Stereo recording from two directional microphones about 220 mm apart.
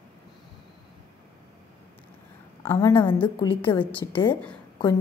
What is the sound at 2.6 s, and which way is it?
Speech, 15° left (ahead or behind).